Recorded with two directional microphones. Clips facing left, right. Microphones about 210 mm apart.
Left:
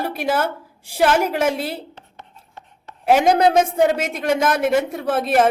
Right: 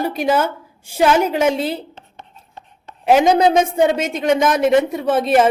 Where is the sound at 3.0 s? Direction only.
Centre (ahead or behind).